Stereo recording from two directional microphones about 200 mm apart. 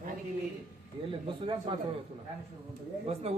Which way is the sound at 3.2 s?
30° right (ahead or behind).